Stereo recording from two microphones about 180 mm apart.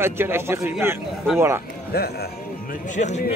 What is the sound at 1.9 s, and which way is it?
Speech, 60° left (ahead or behind).